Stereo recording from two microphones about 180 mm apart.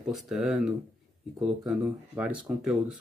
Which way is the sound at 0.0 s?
Centre (ahead or behind).